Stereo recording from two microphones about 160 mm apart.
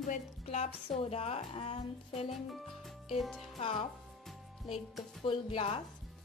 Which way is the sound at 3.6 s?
35° left (ahead or behind).